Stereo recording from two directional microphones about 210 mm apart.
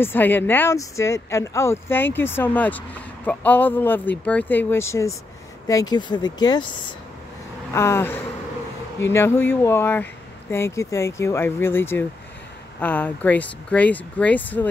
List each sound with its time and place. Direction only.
0.0 s speech: 10° left (ahead or behind)
7.7 s speech: 10° left (ahead or behind)